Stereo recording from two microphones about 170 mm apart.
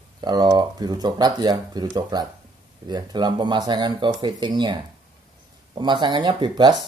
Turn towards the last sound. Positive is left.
turn(degrees=-25)  # may be behind; listen again after turning